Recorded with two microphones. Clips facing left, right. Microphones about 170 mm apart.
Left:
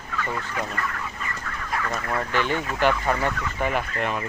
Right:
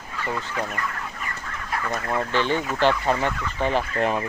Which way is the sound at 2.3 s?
30° right (ahead or behind).